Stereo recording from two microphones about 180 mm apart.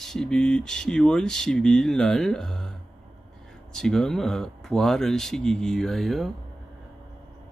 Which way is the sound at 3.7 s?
Centre (ahead or behind).